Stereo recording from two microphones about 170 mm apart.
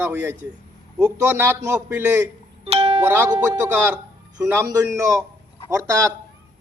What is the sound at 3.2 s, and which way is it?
A man's voice, 25° right (ahead or behind).